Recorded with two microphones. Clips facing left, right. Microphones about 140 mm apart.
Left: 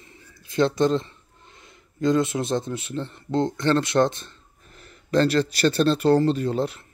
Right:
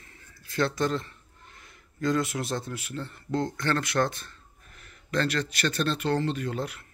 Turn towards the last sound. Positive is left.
turn(degrees=30)  # may be behind; listen again after turning